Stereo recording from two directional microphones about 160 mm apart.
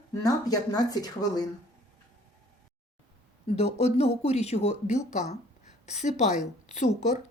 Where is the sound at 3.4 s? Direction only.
40° left (ahead or behind).